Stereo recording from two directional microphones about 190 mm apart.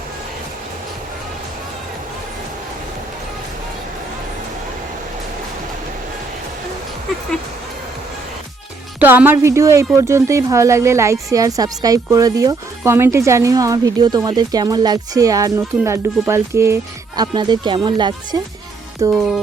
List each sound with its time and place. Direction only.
9.0 s a woman's voice: 10° right (ahead or behind)